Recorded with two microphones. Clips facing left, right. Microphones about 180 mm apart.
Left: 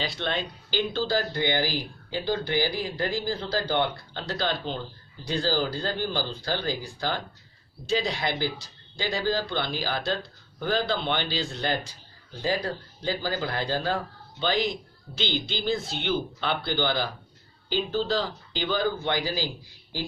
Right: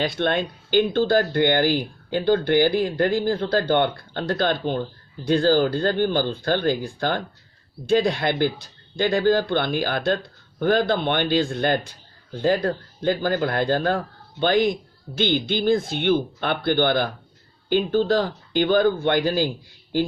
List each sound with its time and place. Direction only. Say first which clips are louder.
0.0 s speech: right 8 dB; 50° right (ahead or behind)